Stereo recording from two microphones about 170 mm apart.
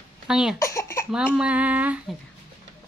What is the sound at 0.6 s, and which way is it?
Cough, 15° left (ahead or behind).